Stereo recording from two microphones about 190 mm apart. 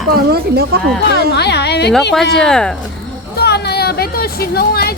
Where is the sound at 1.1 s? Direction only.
60° left (ahead or behind).